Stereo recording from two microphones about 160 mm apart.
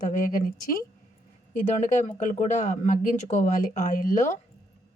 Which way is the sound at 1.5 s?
50° left (ahead or behind).